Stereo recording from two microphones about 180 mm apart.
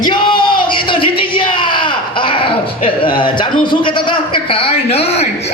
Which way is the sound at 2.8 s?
30° left (ahead or behind).